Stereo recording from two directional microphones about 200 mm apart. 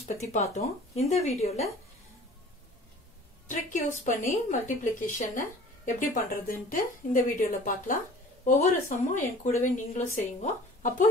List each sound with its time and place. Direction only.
0.2 s a woman's voice: 30° left (ahead or behind)
3.4 s a woman's voice: 40° left (ahead or behind)